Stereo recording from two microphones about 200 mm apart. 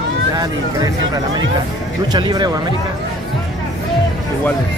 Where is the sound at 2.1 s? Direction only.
20° right (ahead or behind).